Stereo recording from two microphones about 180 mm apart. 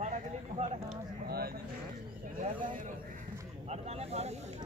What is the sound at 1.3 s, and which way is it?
Speech, 60° right (ahead or behind).